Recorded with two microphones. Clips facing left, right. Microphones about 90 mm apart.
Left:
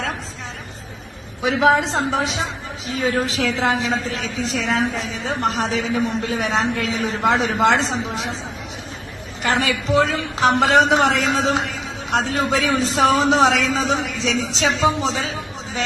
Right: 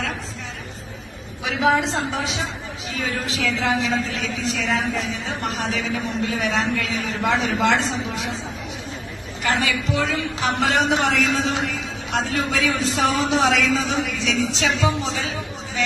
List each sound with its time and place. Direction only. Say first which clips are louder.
1.7 s a man's voice: left 3 dB; 35° left (ahead or behind)
9.4 s a man's voice: left 2 dB; 35° left (ahead or behind)